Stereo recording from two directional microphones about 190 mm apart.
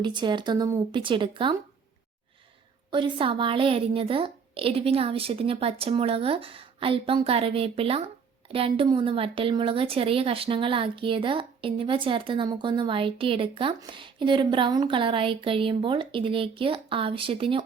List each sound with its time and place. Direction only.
0.0 s a woman's voice: 25° right (ahead or behind)
2.9 s a woman's voice: 25° right (ahead or behind)